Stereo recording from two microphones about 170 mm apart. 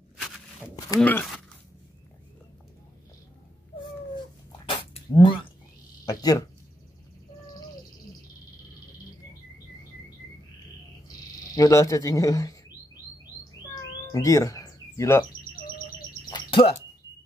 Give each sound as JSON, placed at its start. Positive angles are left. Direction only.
{"t": 0.7, "sound": "speech", "side_deg": 15}
{"t": 4.5, "sound": "dog", "side_deg": 30}
{"t": 6.0, "sound": "a sound", "side_deg": 20}
{"t": 11.5, "sound": "speech", "side_deg": 20}
{"t": 14.1, "sound": "speech", "side_deg": 20}
{"t": 16.3, "sound": "bird", "side_deg": 30}